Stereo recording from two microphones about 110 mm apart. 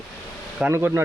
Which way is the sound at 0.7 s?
25° right (ahead or behind).